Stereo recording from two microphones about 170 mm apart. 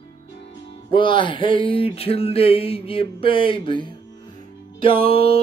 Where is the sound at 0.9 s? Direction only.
30° left (ahead or behind).